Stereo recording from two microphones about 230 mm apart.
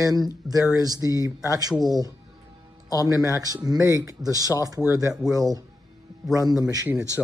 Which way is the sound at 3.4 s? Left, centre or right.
Centre.